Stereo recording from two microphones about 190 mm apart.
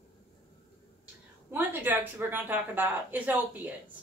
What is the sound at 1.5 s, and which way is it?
Speech, 10° right (ahead or behind).